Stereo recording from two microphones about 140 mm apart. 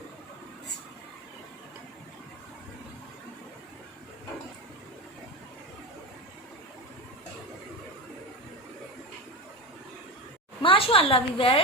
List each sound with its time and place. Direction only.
10.6 s a woman's voice: 40° left (ahead or behind)